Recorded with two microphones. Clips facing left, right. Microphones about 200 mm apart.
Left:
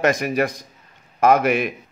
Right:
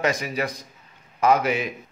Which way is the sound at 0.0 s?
50° left (ahead or behind).